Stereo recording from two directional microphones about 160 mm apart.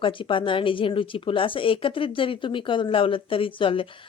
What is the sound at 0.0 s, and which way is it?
Speech, 30° left (ahead or behind).